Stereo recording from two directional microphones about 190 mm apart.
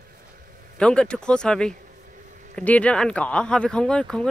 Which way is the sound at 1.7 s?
45° right (ahead or behind).